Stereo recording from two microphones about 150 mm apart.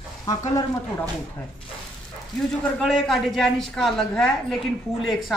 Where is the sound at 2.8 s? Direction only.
Centre (ahead or behind).